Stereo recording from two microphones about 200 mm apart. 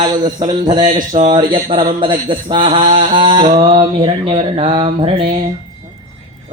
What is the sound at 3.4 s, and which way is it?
Speech, 35° right (ahead or behind).